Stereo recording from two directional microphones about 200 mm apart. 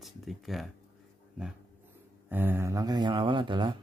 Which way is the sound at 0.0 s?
Centre (ahead or behind).